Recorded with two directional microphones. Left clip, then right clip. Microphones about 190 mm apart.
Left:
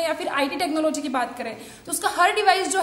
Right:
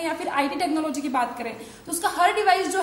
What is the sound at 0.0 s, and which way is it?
A woman's voice, 15° left (ahead or behind).